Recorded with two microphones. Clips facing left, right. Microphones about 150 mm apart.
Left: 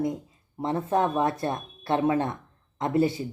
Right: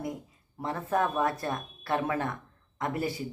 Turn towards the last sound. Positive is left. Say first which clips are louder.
# left 8 dB
turn(degrees=25)  # may be behind; listen again after turning